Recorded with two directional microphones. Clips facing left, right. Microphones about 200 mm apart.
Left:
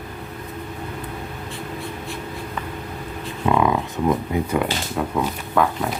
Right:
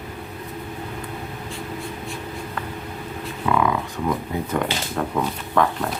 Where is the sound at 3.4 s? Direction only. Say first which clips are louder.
Left 2 dB; 20° left (ahead or behind).